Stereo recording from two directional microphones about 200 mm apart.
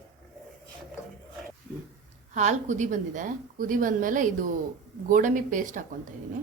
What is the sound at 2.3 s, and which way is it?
A woman's voice, 35° right (ahead or behind).